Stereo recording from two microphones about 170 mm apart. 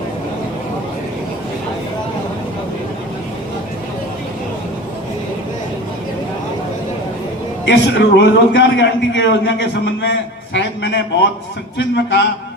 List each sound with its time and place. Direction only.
7.6 s a man's voice: 90° left